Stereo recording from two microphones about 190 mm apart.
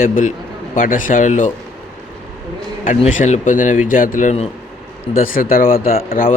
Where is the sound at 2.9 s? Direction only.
35° left (ahead or behind).